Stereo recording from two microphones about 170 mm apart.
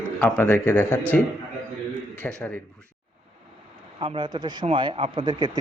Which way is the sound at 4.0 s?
30° right (ahead or behind).